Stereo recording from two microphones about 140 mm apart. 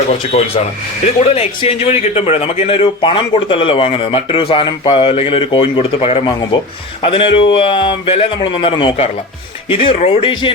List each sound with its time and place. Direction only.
0.3 s speech: 45° left (ahead or behind)